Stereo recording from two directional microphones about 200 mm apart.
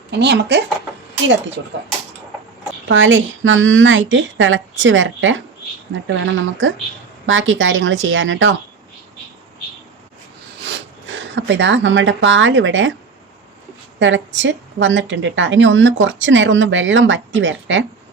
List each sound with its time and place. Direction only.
0.2 s speech: 60° right (ahead or behind)
2.9 s a woman's voice: 70° right (ahead or behind)
11.3 s a woman's voice: 60° right (ahead or behind)
14.0 s a woman's voice: 65° right (ahead or behind)